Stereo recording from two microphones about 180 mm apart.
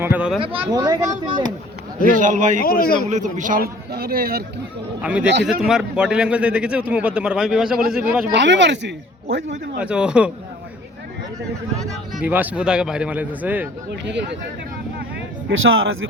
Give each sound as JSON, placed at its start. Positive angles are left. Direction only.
{"t": 0.0, "sound": "a sound", "side_deg": -10}
{"t": 0.3, "sound": "speech", "side_deg": -30}
{"t": 2.0, "sound": "speech", "side_deg": -45}
{"t": 2.6, "sound": "a man's voice", "side_deg": 55}
{"t": 3.1, "sound": "a man's voice", "side_deg": -40}
{"t": 5.5, "sound": "speech", "side_deg": -5}
{"t": 8.4, "sound": "speech", "side_deg": -80}
{"t": 9.7, "sound": "speech", "side_deg": -5}
{"t": 12.2, "sound": "speech", "side_deg": -10}
{"t": 13.9, "sound": "speech", "side_deg": -75}
{"t": 15.4, "sound": "speech", "side_deg": -90}